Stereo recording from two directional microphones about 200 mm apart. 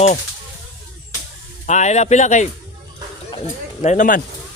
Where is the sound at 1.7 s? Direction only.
35° left (ahead or behind).